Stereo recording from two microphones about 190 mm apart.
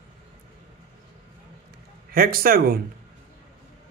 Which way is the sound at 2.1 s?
50° right (ahead or behind).